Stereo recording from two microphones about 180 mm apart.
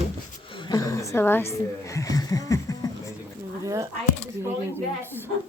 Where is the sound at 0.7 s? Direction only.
20° left (ahead or behind).